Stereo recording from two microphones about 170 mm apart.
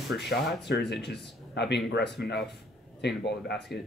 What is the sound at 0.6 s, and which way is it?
Speech, 90° left.